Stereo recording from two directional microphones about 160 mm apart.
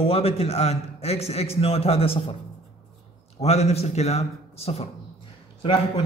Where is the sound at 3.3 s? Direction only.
40° left (ahead or behind).